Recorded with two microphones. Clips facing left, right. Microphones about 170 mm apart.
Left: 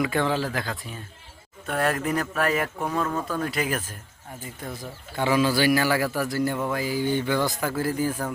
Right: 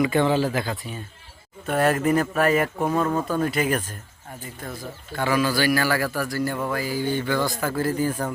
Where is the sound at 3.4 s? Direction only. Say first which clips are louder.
Right 4 dB; centre (ahead or behind).